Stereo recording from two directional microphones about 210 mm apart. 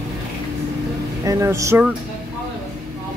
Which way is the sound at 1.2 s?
15° right (ahead or behind).